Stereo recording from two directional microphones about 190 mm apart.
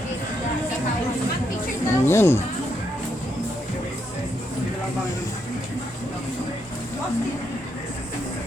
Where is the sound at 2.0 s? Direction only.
15° left (ahead or behind).